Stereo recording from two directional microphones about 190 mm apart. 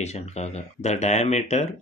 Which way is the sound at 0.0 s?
35° left (ahead or behind).